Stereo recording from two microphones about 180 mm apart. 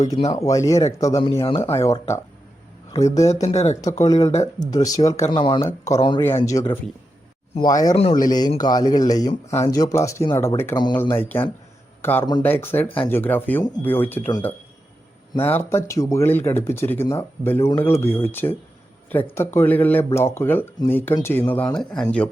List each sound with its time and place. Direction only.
0.3 s speech: 20° left (ahead or behind)
1.6 s speech: 15° left (ahead or behind)
3.4 s speech: 35° left (ahead or behind)
3.7 s speech: 20° left (ahead or behind)
4.2 s speech: 35° left (ahead or behind)
4.6 s speech: 20° left (ahead or behind)
5.6 s speech: 15° left (ahead or behind)
6.4 s speech: 15° left (ahead or behind)
15.4 s speech: 10° left (ahead or behind)